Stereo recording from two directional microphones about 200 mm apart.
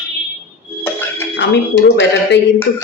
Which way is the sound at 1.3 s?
60° left (ahead or behind).